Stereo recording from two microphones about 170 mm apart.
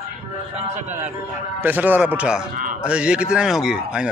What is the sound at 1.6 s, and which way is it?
Speech, 10° right (ahead or behind).